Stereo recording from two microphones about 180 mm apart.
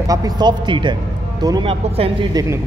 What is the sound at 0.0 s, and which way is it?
Speech, 20° right (ahead or behind).